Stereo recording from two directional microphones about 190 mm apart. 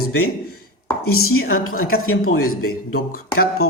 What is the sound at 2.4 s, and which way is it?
Speech, 90° left.